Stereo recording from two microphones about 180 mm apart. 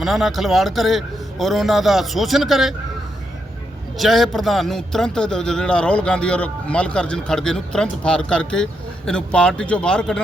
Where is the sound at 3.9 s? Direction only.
Centre (ahead or behind).